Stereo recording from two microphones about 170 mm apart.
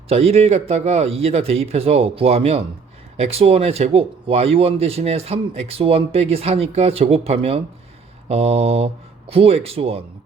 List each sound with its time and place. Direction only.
0.1 s speech: 35° right (ahead or behind)